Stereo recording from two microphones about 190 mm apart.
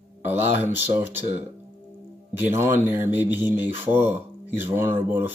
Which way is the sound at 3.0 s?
10° right (ahead or behind).